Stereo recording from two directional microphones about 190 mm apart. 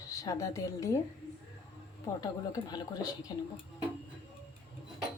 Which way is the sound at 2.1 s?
20° left (ahead or behind).